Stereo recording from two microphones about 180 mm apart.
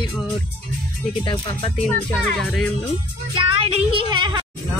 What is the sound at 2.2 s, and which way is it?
Speech, 5° left (ahead or behind).